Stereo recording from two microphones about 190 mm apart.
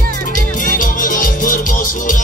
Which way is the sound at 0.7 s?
45° left (ahead or behind).